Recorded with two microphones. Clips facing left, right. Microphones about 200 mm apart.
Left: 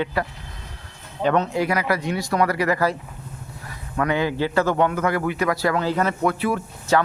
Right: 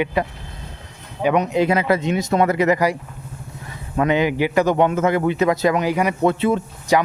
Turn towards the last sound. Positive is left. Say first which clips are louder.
# right 2 dB
turn(degrees=-20)  # may be behind; listen again after turning